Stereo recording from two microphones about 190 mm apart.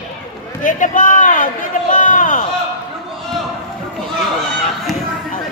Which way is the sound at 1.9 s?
40° left (ahead or behind).